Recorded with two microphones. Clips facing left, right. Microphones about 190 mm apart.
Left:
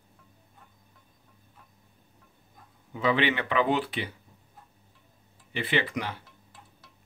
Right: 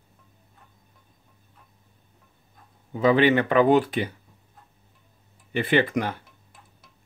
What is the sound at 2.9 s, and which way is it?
Speech, 40° right (ahead or behind).